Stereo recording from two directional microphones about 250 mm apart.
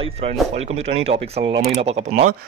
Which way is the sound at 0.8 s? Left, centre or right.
Right.